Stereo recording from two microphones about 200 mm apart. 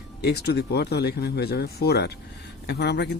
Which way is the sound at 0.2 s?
55° left (ahead or behind).